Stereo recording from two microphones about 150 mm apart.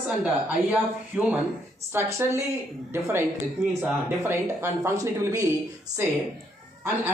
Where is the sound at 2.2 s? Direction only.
15° right (ahead or behind).